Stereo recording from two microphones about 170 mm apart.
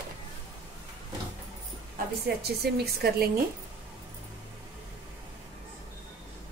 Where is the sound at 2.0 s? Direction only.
60° right (ahead or behind).